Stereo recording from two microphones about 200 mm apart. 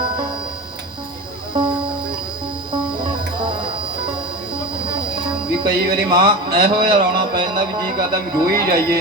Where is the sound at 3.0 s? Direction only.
25° right (ahead or behind).